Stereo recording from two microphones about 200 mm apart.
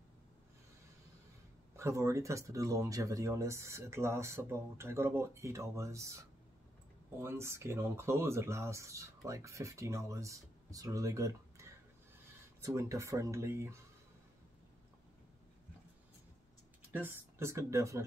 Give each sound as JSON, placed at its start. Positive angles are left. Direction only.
{"t": 1.8, "sound": "speech", "side_deg": -15}
{"t": 12.6, "sound": "speech", "side_deg": -15}
{"t": 16.9, "sound": "speech", "side_deg": -10}